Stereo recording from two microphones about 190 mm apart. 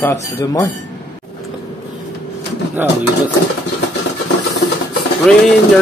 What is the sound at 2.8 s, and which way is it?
Speech, 10° right (ahead or behind).